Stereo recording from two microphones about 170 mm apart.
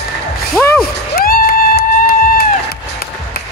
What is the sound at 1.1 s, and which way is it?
Music, 60° left (ahead or behind).